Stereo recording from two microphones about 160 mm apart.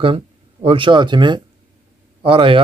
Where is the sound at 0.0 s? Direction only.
35° right (ahead or behind).